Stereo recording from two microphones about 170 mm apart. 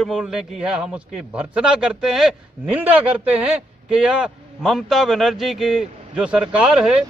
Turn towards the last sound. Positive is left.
turn(degrees=-5)  # may be behind; listen again after turning